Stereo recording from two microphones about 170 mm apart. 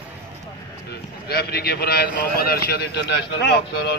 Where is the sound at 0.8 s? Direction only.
70° left (ahead or behind).